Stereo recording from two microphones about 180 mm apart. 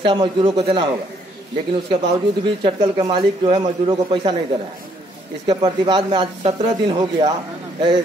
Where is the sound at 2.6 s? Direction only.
25° right (ahead or behind).